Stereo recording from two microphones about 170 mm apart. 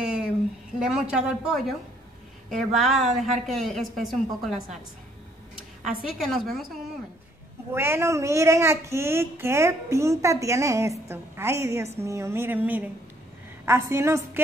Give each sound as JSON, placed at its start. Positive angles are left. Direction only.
{"t": 0.7, "sound": "a woman's voice", "side_deg": -5}
{"t": 6.0, "sound": "a woman's voice", "side_deg": 0}
{"t": 7.7, "sound": "speech", "side_deg": -15}